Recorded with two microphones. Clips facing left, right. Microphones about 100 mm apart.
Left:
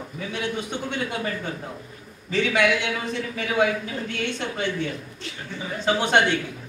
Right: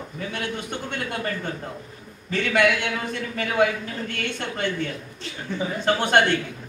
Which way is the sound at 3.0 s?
55° right (ahead or behind).